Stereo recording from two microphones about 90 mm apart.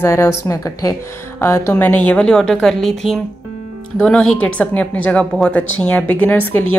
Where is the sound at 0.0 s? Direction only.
30° left (ahead or behind).